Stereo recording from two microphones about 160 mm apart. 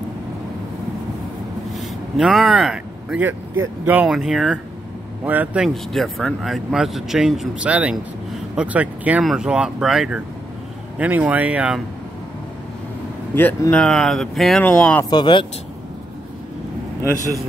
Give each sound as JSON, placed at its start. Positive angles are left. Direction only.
{"t": 1.8, "sound": "speech", "side_deg": 0}
{"t": 13.3, "sound": "speech", "side_deg": 10}
{"t": 15.0, "sound": "speech", "side_deg": 25}